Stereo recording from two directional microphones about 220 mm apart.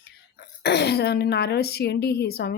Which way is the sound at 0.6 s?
50° left (ahead or behind).